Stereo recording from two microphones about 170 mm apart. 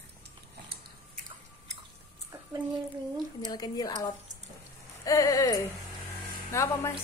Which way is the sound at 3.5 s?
25° left (ahead or behind).